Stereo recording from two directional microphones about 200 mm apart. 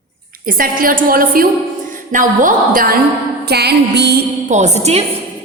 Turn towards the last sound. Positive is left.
turn(degrees=-35)  # may be behind; listen again after turning